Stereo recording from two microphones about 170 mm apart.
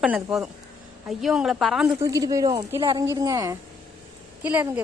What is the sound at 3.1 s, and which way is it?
A woman's voice, 15° right (ahead or behind).